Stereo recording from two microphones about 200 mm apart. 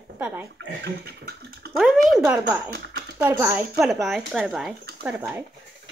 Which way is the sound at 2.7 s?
55° right (ahead or behind).